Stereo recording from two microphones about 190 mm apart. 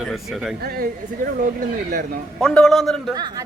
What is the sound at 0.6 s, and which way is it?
Speech, 50° right (ahead or behind).